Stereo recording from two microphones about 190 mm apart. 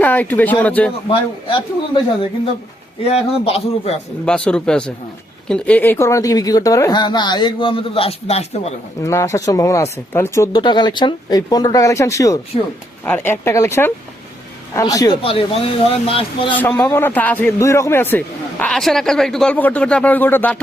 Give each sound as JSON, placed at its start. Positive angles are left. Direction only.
{"t": 0.0, "sound": "speech", "side_deg": 10}
{"t": 3.0, "sound": "a man's voice", "side_deg": 30}
{"t": 4.3, "sound": "speech", "side_deg": 5}
{"t": 9.0, "sound": "speech", "side_deg": 15}
{"t": 16.6, "sound": "speech", "side_deg": 10}